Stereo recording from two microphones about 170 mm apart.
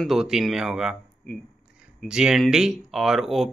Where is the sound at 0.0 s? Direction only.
Centre (ahead or behind).